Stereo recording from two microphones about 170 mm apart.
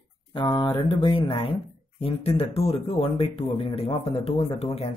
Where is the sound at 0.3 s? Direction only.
25° left (ahead or behind).